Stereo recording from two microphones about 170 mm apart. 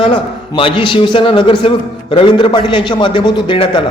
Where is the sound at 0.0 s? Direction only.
30° left (ahead or behind).